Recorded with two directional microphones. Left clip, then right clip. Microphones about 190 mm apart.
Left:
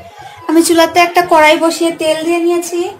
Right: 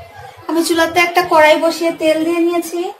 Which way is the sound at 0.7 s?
30° left (ahead or behind).